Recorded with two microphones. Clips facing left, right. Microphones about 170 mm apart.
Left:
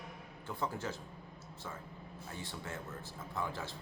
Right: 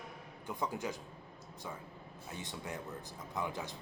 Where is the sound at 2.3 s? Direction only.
20° right (ahead or behind).